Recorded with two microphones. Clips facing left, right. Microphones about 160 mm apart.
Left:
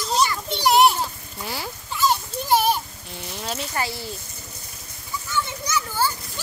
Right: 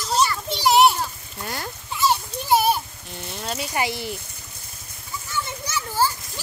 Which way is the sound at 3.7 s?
15° right (ahead or behind).